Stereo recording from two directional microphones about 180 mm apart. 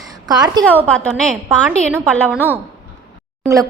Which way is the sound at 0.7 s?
5° left (ahead or behind).